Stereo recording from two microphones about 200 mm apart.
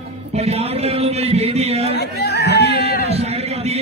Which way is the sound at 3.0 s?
30° right (ahead or behind).